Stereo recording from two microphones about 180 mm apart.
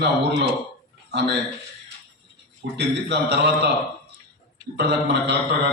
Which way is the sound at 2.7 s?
70° right (ahead or behind).